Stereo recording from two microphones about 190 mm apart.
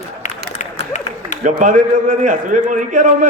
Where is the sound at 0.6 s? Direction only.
40° left (ahead or behind).